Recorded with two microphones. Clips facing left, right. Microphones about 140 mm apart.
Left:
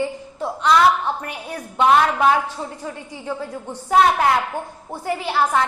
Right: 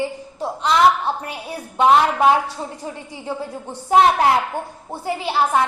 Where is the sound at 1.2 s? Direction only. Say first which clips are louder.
Even; 10° right (ahead or behind).